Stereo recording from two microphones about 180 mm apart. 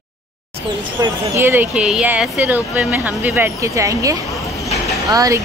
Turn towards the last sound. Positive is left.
turn(degrees=-20)  # may be behind; listen again after turning